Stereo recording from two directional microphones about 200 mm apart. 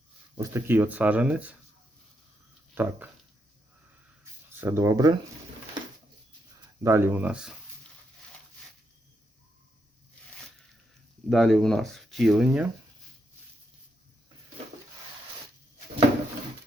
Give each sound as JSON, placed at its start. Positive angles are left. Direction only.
{"t": 0.3, "sound": "speech", "side_deg": -15}
{"t": 2.8, "sound": "speech", "side_deg": -10}
{"t": 4.2, "sound": "a sound", "side_deg": -15}
{"t": 6.8, "sound": "speech", "side_deg": -10}
{"t": 11.3, "sound": "speech", "side_deg": 0}